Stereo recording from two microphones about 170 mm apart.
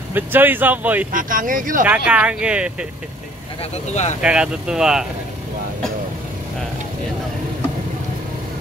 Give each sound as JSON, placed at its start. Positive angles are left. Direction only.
{"t": 0.1, "sound": "speech", "side_deg": -10}
{"t": 1.1, "sound": "speech", "side_deg": -50}
{"t": 2.0, "sound": "speech", "side_deg": -5}
{"t": 3.7, "sound": "speech", "side_deg": 40}
{"t": 4.2, "sound": "speech", "side_deg": -5}